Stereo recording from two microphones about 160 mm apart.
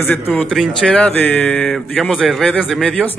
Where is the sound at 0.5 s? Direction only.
Centre (ahead or behind).